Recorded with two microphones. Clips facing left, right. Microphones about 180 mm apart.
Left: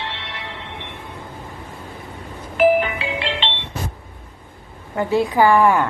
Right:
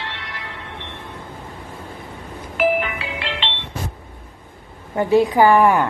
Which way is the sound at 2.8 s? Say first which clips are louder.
Left 3 dB; 30° left (ahead or behind).